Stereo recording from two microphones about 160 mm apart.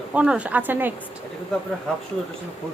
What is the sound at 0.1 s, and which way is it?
Speech, 5° right (ahead or behind).